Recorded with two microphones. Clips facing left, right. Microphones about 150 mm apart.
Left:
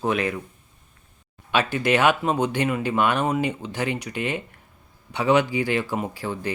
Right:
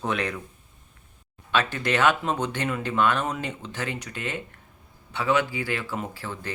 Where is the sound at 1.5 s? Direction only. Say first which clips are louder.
Left 4 dB; 10° left (ahead or behind).